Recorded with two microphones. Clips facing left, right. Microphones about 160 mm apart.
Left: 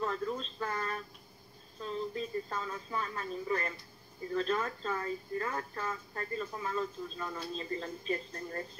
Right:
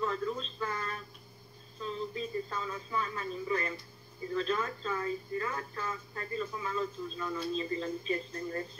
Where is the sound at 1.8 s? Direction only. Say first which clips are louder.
Even; 50° left (ahead or behind).